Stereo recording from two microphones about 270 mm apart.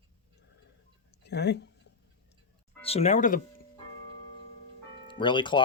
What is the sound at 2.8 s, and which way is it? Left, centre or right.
Speech, left.